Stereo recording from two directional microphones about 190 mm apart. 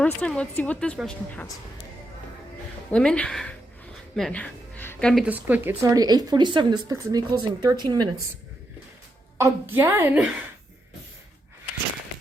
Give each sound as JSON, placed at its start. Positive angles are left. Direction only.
{"t": 0.0, "sound": "speech", "side_deg": 5}
{"t": 2.9, "sound": "speech", "side_deg": 5}
{"t": 4.1, "sound": "a sound", "side_deg": 5}
{"t": 5.2, "sound": "speech", "side_deg": -10}
{"t": 9.4, "sound": "a woman's voice", "side_deg": -10}